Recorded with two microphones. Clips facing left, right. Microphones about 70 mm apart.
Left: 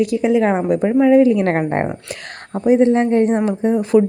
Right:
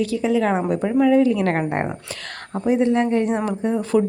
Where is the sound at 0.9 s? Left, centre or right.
Left.